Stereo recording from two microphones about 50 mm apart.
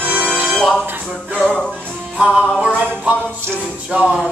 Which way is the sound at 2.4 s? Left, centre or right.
Centre.